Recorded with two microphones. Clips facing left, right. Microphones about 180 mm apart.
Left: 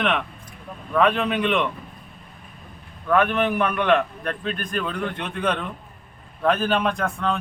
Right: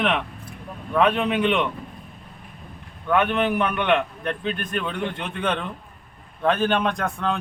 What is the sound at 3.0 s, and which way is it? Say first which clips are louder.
A man's voice: left 1 dB; centre (ahead or behind).